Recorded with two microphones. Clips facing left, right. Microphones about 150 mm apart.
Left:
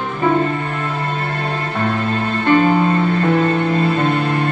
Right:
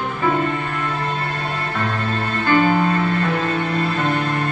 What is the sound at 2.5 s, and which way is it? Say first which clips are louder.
Music: left 3 dB; 25° left (ahead or behind).